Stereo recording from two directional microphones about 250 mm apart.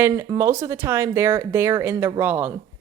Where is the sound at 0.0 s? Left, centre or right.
Centre.